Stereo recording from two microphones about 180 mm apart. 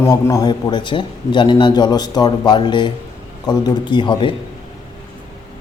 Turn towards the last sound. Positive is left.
turn(degrees=25)  # may be behind; listen again after turning